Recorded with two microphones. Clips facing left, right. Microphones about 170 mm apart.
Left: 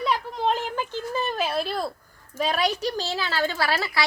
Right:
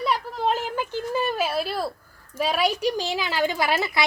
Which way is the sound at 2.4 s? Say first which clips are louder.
Right 2 dB; 10° right (ahead or behind).